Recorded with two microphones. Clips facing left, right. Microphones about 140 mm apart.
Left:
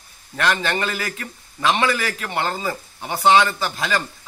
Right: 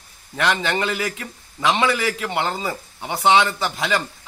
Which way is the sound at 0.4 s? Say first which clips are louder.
Even; 15° right (ahead or behind).